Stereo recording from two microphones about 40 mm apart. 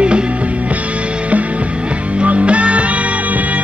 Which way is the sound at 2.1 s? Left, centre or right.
Right.